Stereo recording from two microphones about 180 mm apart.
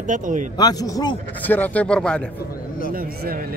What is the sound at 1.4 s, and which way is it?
Speech, 10° left (ahead or behind).